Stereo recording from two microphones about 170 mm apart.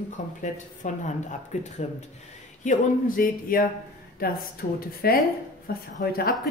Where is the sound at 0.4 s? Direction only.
50° left (ahead or behind).